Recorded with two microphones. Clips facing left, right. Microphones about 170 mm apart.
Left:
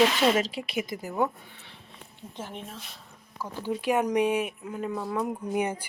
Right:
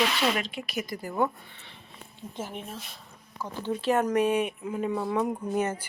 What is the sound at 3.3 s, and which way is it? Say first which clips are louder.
Speech: even; 10° left (ahead or behind).